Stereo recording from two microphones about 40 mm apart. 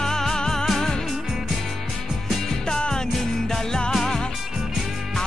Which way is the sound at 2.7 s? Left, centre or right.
Centre.